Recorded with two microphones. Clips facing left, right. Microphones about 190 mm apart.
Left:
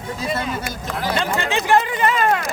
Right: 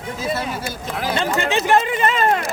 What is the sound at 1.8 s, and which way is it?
Speech, 25° right (ahead or behind).